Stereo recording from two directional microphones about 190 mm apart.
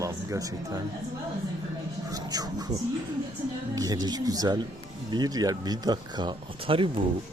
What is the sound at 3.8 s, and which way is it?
Speech, 20° right (ahead or behind).